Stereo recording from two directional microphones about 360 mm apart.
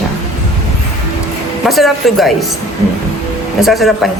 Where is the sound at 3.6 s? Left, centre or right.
Centre.